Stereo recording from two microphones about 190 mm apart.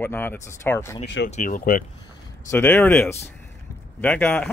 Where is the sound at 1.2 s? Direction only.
45° left (ahead or behind).